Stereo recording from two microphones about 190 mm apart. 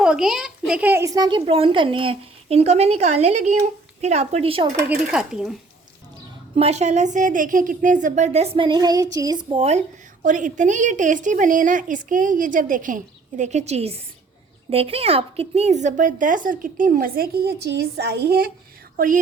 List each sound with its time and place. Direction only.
0.0 s a child's voice: 5° right (ahead or behind); by 4.7 s 30° right (ahead or behind)
5.1 s speech: 5° right (ahead or behind)
6.6 s a woman's voice: 35° right (ahead or behind)
10.2 s a woman's voice: 40° right (ahead or behind)